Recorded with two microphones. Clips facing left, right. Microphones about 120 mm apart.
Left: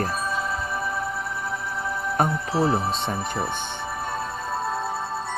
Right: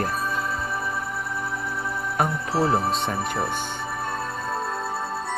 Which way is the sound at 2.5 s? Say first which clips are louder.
Right 1 dB; 20° left (ahead or behind).